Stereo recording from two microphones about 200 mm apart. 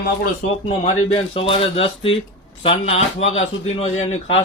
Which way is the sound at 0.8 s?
30° left (ahead or behind).